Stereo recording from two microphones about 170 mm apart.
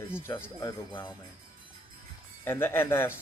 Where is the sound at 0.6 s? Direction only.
25° left (ahead or behind).